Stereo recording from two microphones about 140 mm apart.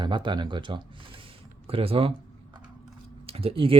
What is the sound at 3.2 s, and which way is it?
Speech, 45° right (ahead or behind).